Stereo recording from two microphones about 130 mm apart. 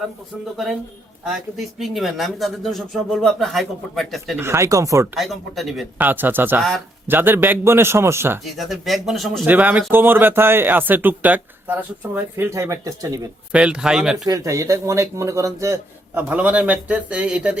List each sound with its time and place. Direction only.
0.5 s speech: centre (ahead or behind)
4.4 s a man's voice: 20° right (ahead or behind)
5.1 s speech: centre (ahead or behind)
6.0 s speech: 15° right (ahead or behind)
6.6 s speech: centre (ahead or behind)
7.1 s speech: 15° right (ahead or behind)
8.4 s speech: centre (ahead or behind)
9.5 s speech: 15° right (ahead or behind)
13.5 s speech: 10° right (ahead or behind)
14.3 s a man's voice: 25° right (ahead or behind)
16.3 s speech: 10° right (ahead or behind)